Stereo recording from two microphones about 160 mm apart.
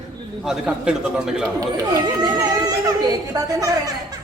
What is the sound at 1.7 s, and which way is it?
Speech, 25° right (ahead or behind).